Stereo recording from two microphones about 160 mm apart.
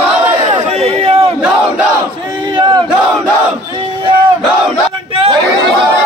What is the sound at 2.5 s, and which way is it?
Battle cry, 30° right (ahead or behind).